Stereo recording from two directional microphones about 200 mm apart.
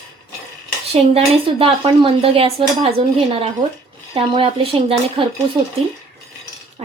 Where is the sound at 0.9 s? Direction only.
30° right (ahead or behind).